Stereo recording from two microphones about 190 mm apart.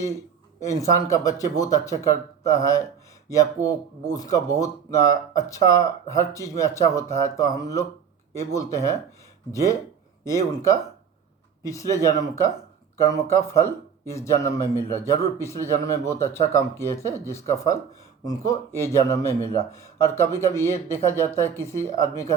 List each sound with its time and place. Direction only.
0.6 s speech: 15° left (ahead or behind)